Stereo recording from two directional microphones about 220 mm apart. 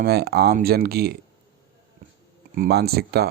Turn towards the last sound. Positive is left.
turn(degrees=-45)  # may be behind; listen again after turning